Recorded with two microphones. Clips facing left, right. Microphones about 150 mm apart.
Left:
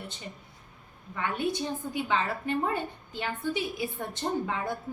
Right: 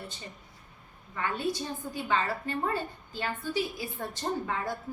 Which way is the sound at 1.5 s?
20° left (ahead or behind).